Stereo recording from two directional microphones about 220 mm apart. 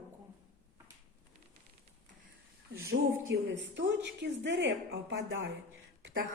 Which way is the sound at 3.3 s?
55° right (ahead or behind).